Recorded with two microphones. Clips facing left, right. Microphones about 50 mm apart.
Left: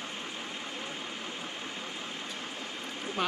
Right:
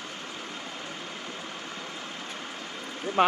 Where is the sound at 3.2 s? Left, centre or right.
Right.